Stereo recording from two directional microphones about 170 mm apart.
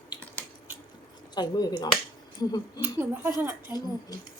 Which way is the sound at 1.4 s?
25° left (ahead or behind).